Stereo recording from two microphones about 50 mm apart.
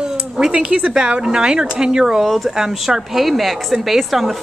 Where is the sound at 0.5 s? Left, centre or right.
Right.